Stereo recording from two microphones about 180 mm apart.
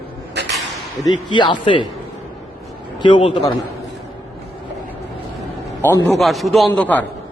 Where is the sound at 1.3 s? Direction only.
25° left (ahead or behind).